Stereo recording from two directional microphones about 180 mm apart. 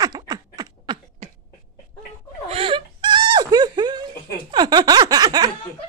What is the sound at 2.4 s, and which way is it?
Wail, 30° right (ahead or behind).